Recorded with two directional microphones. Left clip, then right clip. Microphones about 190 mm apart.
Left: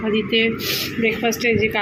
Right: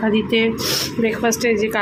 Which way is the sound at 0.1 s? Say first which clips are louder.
Left 3 dB; 15° right (ahead or behind).